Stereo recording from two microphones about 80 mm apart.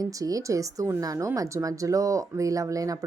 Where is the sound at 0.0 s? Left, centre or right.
Right.